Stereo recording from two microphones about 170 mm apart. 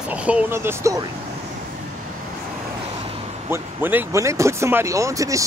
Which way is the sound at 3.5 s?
10° right (ahead or behind).